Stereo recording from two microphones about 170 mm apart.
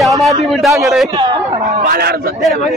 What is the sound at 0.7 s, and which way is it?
A man's voice, 15° right (ahead or behind).